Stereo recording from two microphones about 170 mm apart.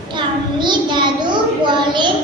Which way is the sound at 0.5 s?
25° right (ahead or behind).